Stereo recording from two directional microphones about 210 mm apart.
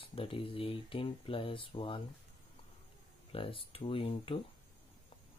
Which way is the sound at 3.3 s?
25° left (ahead or behind).